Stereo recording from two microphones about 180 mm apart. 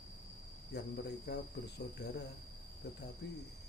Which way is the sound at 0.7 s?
65° left (ahead or behind).